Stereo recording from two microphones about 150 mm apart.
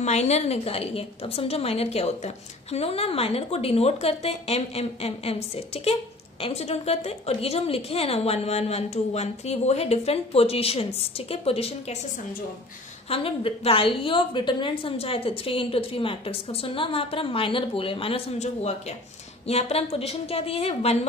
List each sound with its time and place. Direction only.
0.0 s a woman's voice: 45° left (ahead or behind)
13.1 s a woman's voice: 40° left (ahead or behind)